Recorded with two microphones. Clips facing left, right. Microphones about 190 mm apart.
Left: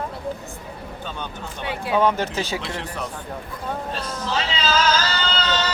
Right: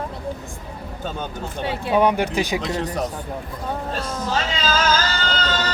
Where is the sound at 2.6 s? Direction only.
40° right (ahead or behind).